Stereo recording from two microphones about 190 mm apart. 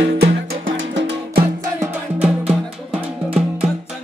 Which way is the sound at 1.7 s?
10° right (ahead or behind).